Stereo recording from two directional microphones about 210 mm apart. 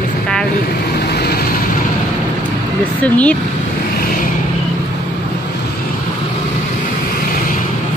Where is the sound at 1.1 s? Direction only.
50° left (ahead or behind).